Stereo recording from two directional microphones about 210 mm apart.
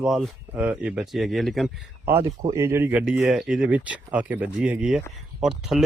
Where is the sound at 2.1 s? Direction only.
10° right (ahead or behind).